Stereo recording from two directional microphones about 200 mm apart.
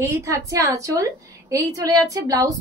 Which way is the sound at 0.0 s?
15° right (ahead or behind).